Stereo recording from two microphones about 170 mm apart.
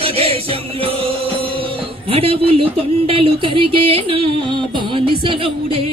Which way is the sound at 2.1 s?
35° right (ahead or behind).